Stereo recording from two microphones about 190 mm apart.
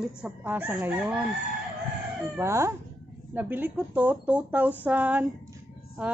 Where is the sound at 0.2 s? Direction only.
10° right (ahead or behind).